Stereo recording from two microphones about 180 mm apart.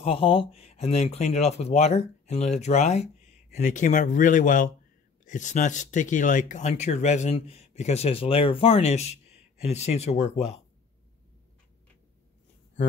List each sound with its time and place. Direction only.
0.0 s speech: 30° left (ahead or behind)